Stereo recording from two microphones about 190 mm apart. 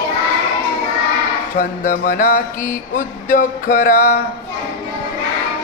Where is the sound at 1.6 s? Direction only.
45° left (ahead or behind).